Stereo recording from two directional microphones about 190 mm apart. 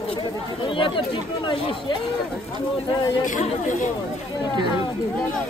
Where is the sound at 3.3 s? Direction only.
40° left (ahead or behind).